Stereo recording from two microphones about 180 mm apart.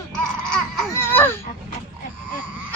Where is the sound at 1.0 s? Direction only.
10° left (ahead or behind).